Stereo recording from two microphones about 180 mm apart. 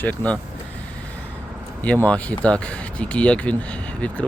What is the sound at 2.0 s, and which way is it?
Speech, 10° left (ahead or behind).